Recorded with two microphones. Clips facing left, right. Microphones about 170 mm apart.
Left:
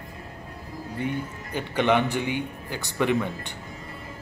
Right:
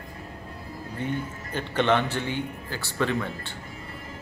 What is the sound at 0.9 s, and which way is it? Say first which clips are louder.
A man's voice: left 1 dB; 10° left (ahead or behind).